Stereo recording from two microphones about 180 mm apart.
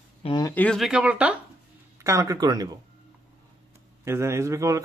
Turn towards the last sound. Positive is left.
turn(degrees=-15)  # may be behind; listen again after turning